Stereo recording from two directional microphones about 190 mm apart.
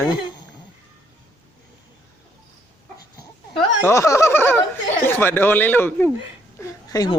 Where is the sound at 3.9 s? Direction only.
15° left (ahead or behind).